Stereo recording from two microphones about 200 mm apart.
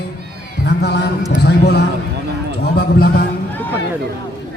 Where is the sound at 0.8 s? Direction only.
55° left (ahead or behind).